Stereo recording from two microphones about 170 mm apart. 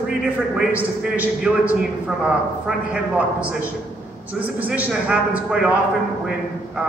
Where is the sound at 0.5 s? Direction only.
5° right (ahead or behind).